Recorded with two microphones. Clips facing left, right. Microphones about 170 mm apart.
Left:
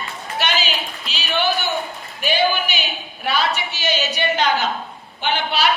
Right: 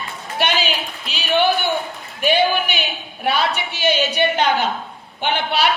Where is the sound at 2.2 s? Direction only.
55° right (ahead or behind).